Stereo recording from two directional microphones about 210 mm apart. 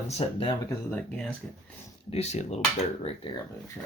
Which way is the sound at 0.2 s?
25° left (ahead or behind).